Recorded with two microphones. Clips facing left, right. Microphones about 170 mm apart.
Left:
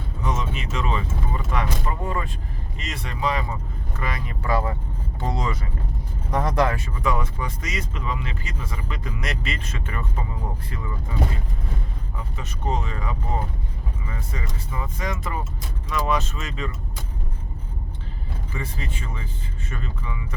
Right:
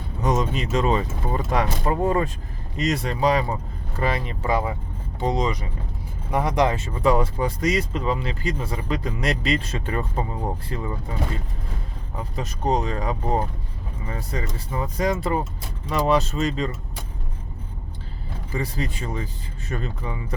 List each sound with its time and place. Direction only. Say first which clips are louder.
0.2 s speech: right 6 dB; 40° right (ahead or behind)
12.1 s speech: right 7 dB; 35° right (ahead or behind)
18.5 s speech: right 6 dB; 35° right (ahead or behind)